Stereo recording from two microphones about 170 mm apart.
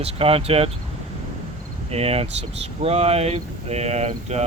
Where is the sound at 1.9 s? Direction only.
35° right (ahead or behind).